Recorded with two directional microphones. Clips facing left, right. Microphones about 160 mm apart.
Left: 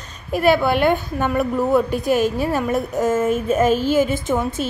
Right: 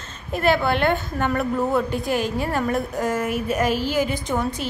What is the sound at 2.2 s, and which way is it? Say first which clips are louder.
Speech: left 5 dB; 20° right (ahead or behind).